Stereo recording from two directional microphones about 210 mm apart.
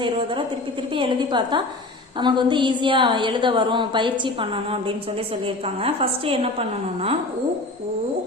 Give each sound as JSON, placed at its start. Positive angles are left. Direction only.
{"t": 0.0, "sound": "a woman's voice", "side_deg": -25}